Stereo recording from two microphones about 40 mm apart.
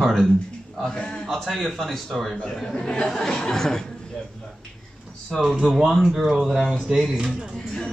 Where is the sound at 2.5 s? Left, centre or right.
Centre.